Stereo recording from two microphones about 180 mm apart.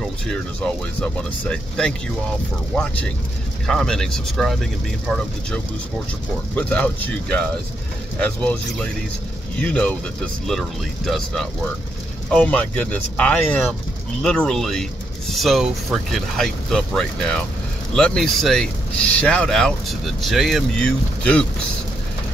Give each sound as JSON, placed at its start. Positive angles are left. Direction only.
{"t": 0.0, "sound": "speech", "side_deg": 5}
{"t": 6.5, "sound": "speech", "side_deg": 10}